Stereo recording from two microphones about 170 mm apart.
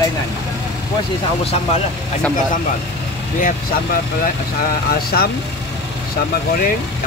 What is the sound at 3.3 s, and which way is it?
Speech, 55° left (ahead or behind).